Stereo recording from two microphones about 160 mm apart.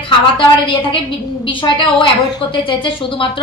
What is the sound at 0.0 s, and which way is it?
A woman's voice, 35° left (ahead or behind).